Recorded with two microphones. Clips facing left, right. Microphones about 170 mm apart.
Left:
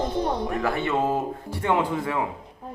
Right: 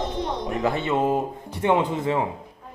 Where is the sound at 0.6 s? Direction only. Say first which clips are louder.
Right 3 dB; 20° right (ahead or behind).